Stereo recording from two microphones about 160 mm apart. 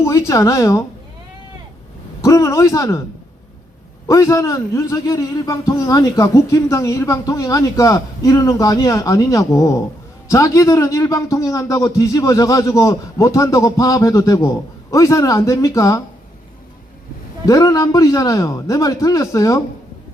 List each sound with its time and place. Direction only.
0.0 s a man's voice: 20° left (ahead or behind)
2.2 s a man's voice: 20° left (ahead or behind)
4.1 s a man's voice: 20° left (ahead or behind)
17.4 s a man's voice: 20° left (ahead or behind)